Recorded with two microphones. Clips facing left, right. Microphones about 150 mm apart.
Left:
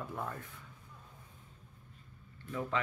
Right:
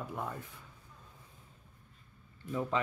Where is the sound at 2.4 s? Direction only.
15° right (ahead or behind).